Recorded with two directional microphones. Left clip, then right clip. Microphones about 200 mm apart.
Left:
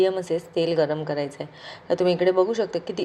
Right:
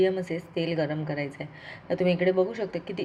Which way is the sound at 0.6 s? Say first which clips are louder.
Left 6 dB; 25° left (ahead or behind).